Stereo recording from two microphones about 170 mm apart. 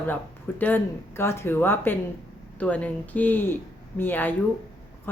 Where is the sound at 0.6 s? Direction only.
10° left (ahead or behind).